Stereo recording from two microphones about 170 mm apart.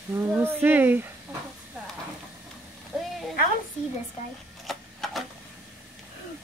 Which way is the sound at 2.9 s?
5° right (ahead or behind).